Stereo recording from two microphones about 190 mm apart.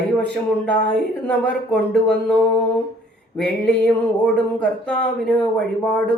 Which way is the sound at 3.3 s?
5° left (ahead or behind).